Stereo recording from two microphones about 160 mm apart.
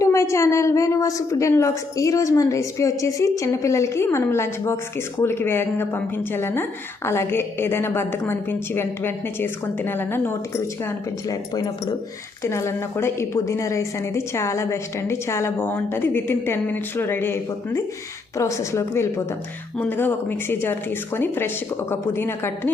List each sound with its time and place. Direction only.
0.0 s a woman's voice: 20° left (ahead or behind)
11.3 s a woman's voice: 25° left (ahead or behind)